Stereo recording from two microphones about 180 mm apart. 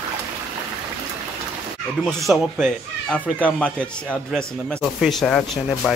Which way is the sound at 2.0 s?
Centre (ahead or behind).